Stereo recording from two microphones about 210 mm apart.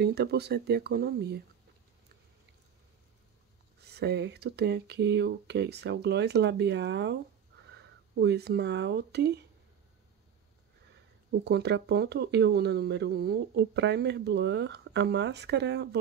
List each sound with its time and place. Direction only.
0.0 s speech: 50° right (ahead or behind)
3.8 s speech: 50° right (ahead or behind)
11.4 s speech: 50° right (ahead or behind)